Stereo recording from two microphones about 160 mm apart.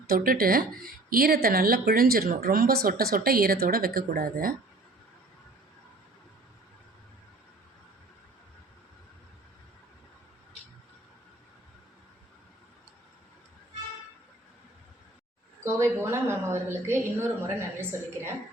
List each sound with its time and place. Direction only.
0.1 s speech: 65° right (ahead or behind)
15.6 s a woman's voice: 15° right (ahead or behind)